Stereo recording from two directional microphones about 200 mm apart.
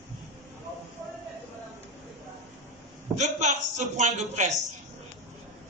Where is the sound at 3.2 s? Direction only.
35° right (ahead or behind).